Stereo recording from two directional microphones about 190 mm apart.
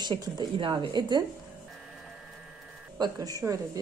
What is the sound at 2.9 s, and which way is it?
Speech, 20° right (ahead or behind).